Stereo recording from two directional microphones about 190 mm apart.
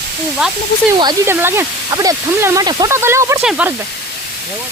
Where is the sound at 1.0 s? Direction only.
10° right (ahead or behind).